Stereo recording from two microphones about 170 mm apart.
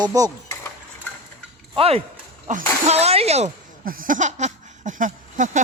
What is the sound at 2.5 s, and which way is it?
Speech, 45° right (ahead or behind).